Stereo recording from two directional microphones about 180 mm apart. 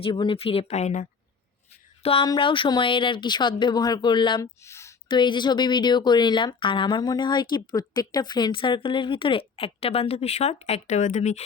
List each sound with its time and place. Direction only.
0.0 s speech: 30° left (ahead or behind)
4.6 s speech: 15° left (ahead or behind); by 11.4 s 40° left (ahead or behind)